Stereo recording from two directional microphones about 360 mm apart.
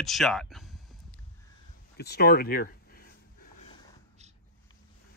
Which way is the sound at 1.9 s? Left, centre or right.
Left.